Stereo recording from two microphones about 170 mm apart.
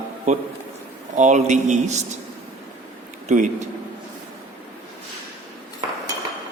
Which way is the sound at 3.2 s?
45° right (ahead or behind).